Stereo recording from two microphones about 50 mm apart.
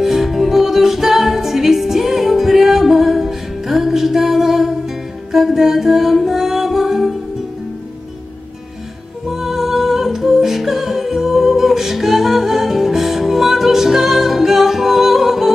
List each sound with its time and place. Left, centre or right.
0.0 s music: centre
9.3 s humming: centre